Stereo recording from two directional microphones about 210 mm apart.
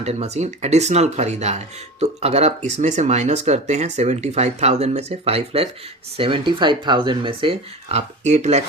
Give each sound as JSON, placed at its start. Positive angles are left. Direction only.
{"t": 0.0, "sound": "speech", "side_deg": -30}